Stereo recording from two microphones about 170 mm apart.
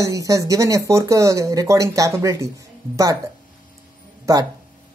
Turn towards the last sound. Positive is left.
turn(degrees=-20)  # may be behind; listen again after turning